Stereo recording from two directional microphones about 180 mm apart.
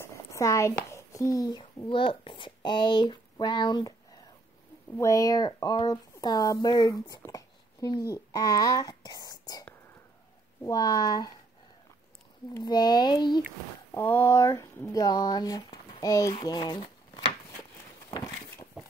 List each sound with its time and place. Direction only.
0.0 s a child's voice: 15° left (ahead or behind)
12.5 s speech: 20° left (ahead or behind)
13.9 s speech: 10° left (ahead or behind)
18.1 s a sound: 20° left (ahead or behind)